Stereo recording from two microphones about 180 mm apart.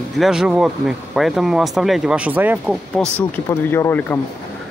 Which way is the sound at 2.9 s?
10° left (ahead or behind).